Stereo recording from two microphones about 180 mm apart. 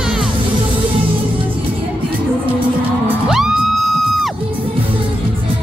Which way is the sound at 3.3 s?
Centre (ahead or behind).